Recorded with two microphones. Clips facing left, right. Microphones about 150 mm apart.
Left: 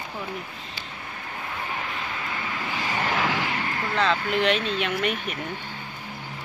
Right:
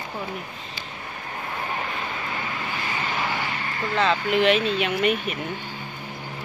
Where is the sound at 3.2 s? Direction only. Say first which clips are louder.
Left 2 dB; 90° left.